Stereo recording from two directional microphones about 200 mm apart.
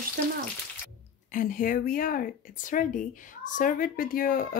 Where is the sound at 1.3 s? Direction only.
45° left (ahead or behind).